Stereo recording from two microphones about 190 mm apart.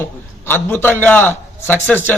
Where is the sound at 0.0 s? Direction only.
10° left (ahead or behind).